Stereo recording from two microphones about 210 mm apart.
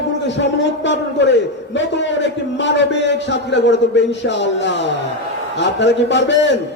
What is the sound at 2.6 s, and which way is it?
A man's voice, 60° left (ahead or behind).